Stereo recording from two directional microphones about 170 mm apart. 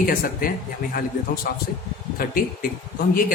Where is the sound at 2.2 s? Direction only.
60° left (ahead or behind).